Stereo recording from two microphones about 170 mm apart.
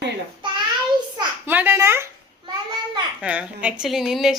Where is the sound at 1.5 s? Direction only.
10° right (ahead or behind).